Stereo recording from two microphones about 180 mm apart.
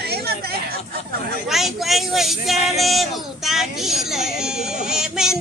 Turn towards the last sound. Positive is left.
turn(degrees=-5)  # may be behind; listen again after turning